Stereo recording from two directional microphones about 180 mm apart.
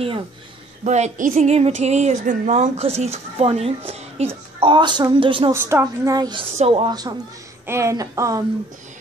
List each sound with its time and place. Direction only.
0.8 s a woman's voice: 40° right (ahead or behind)
5.5 s a woman's voice: 15° right (ahead or behind)